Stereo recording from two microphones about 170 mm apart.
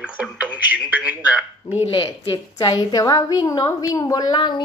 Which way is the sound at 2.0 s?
25° left (ahead or behind).